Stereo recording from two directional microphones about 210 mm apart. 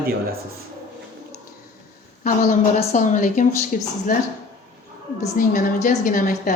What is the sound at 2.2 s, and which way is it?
A woman's voice, 35° left (ahead or behind).